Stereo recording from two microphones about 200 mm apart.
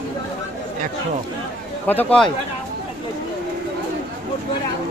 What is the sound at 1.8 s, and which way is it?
Speech, 10° left (ahead or behind).